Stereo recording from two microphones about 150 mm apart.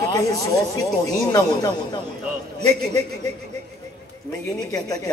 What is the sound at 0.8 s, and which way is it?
A man's voice, 25° left (ahead or behind).